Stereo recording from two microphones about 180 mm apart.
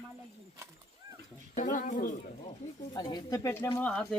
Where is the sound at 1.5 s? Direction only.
50° left (ahead or behind).